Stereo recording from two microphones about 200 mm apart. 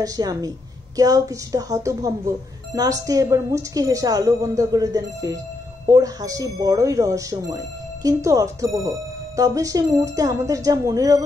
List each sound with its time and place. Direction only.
0.0 s a woman's voice: 20° right (ahead or behind)